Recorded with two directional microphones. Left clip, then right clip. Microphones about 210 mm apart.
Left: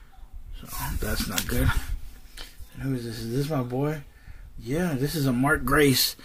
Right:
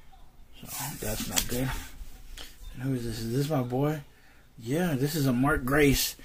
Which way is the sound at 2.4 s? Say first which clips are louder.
Left 2 dB; centre (ahead or behind).